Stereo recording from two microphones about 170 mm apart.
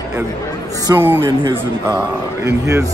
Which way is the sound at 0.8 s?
15° right (ahead or behind).